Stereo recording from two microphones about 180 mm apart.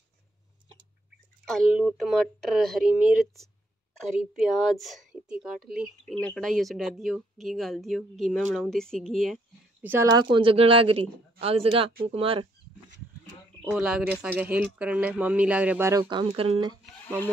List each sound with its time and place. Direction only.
1.4 s a woman's voice: centre (ahead or behind)
4.3 s a woman's voice: centre (ahead or behind)
9.8 s speech: 10° right (ahead or behind)
10.2 s speech: 30° right (ahead or behind)
13.7 s speech: 5° right (ahead or behind); by 16.3 s 20° right (ahead or behind)
16.3 s speech: 30° right (ahead or behind)